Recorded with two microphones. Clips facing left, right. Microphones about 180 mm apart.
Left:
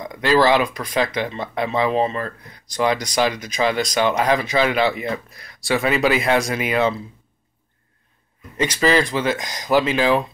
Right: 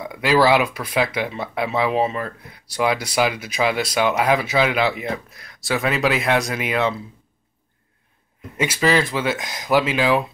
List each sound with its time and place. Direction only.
0.0 s speech: 5° right (ahead or behind)
8.5 s speech: 5° right (ahead or behind)